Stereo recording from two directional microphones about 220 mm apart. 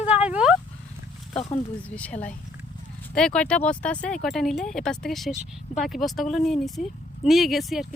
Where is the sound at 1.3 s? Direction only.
25° left (ahead or behind).